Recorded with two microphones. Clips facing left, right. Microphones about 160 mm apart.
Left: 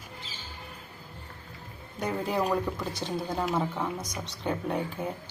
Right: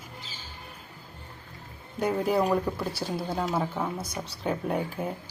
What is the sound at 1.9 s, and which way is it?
A woman's voice, 10° right (ahead or behind).